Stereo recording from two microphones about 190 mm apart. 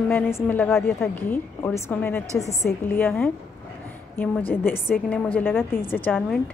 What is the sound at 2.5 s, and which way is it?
A woman's voice, 15° left (ahead or behind).